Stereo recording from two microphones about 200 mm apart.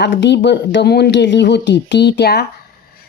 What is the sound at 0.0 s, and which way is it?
Speech, 60° left (ahead or behind).